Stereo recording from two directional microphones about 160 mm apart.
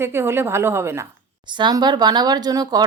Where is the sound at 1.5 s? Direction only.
30° right (ahead or behind).